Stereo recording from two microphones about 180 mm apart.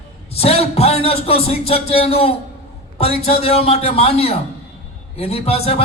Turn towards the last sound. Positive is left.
turn(degrees=35)  # may be behind; listen again after turning